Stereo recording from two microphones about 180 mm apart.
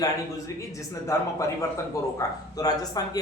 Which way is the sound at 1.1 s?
15° left (ahead or behind).